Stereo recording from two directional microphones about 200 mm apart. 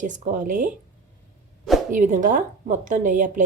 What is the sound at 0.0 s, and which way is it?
Speech, 40° right (ahead or behind).